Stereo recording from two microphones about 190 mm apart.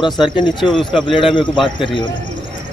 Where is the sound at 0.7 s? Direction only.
25° left (ahead or behind).